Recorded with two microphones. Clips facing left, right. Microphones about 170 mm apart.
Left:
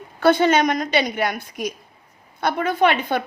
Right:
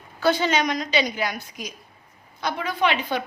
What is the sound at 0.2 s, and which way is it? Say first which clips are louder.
A woman's voice: left 5 dB; 55° left (ahead or behind).